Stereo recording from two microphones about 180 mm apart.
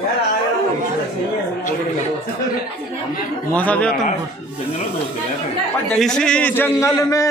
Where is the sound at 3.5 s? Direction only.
10° left (ahead or behind).